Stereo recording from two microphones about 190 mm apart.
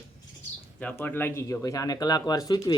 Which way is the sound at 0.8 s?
10° left (ahead or behind).